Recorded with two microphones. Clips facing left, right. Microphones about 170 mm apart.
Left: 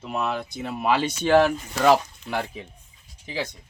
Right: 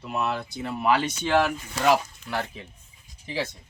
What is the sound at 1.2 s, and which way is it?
Speech, 35° left (ahead or behind).